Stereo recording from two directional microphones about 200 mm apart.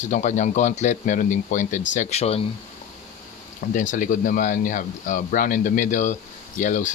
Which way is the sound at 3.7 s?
40° left (ahead or behind).